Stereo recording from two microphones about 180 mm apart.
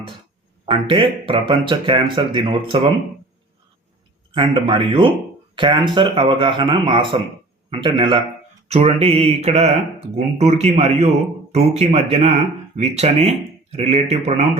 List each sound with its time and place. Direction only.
0.6 s speech: 30° right (ahead or behind)
4.4 s speech: 30° right (ahead or behind)
8.6 s mantra: 35° right (ahead or behind)
11.5 s speech: 35° right (ahead or behind)
14.1 s mantra: 35° right (ahead or behind)